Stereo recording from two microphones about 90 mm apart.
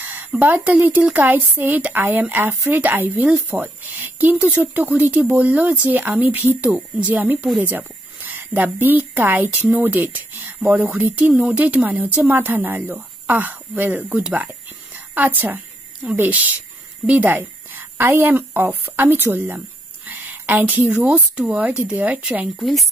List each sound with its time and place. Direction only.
0.0 s speech: 25° right (ahead or behind)
22.6 s a woman's voice: centre (ahead or behind)